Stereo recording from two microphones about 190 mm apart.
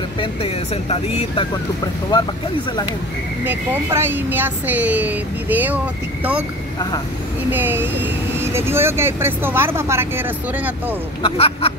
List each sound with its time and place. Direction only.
0.2 s speech: 30° left (ahead or behind)
3.4 s speech: 10° right (ahead or behind)
7.5 s speech: 10° right (ahead or behind)
11.2 s speech: 30° left (ahead or behind)